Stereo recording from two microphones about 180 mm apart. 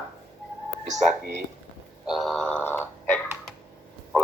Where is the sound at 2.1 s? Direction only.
Centre (ahead or behind).